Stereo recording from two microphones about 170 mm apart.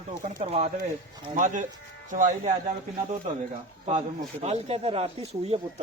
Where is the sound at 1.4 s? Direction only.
50° right (ahead or behind).